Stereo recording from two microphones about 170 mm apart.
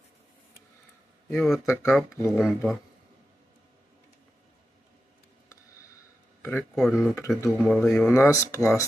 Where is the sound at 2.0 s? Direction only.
15° left (ahead or behind).